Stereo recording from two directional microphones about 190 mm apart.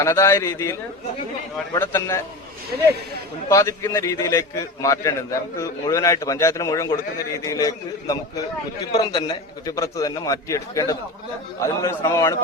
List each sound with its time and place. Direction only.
0.0 s a man's voice: 15° left (ahead or behind)
3.5 s a man's voice: 15° left (ahead or behind)